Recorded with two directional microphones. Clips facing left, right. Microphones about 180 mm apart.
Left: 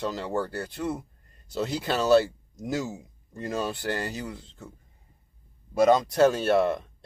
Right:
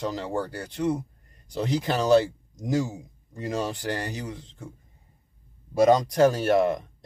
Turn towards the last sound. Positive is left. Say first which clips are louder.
# right 1 dB
turn(degrees=-15)  # may be behind; listen again after turning